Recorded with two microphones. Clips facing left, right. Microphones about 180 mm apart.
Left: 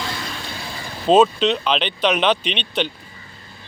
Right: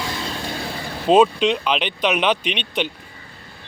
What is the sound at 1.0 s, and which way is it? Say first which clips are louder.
Speech: even; 10° right (ahead or behind).